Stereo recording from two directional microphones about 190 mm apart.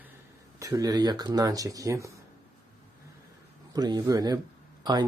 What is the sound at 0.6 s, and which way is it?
Speech, 20° right (ahead or behind).